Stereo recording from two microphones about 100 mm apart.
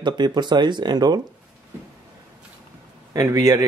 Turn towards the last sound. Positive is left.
turn(degrees=-35)  # may be behind; listen again after turning